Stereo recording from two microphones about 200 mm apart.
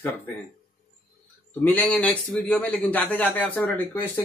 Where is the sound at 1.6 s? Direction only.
5° left (ahead or behind).